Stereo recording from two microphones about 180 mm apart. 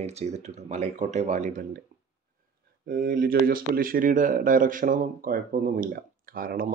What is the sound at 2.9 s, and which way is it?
Speech, 50° right (ahead or behind).